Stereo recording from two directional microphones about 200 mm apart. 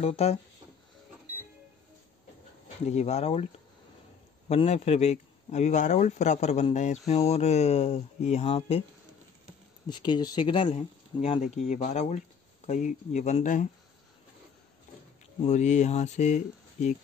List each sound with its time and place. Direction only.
0.0 s speech: 30° left (ahead or behind)
2.9 s speech: 30° left (ahead or behind)
4.5 s speech: 30° left (ahead or behind)
9.8 s speech: 20° left (ahead or behind); by 13.7 s 40° left (ahead or behind)
15.4 s speech: 35° left (ahead or behind)